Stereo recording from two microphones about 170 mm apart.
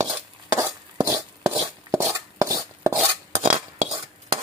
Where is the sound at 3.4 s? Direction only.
40° right (ahead or behind).